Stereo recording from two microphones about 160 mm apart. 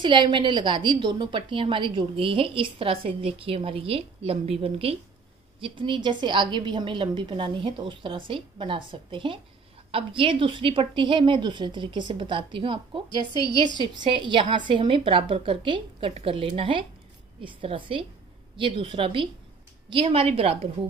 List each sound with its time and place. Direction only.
0.0 s a woman's voice: 30° right (ahead or behind)
13.3 s a woman's voice: 25° left (ahead or behind)
13.7 s a woman's voice: 30° right (ahead or behind)